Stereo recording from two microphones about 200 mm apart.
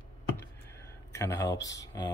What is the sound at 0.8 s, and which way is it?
Speech, 15° left (ahead or behind).